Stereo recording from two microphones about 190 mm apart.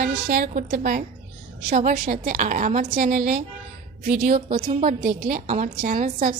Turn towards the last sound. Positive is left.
turn(degrees=-40)  # may be behind; listen again after turning